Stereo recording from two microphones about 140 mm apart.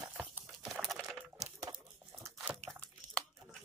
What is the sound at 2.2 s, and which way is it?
Biting, 20° right (ahead or behind).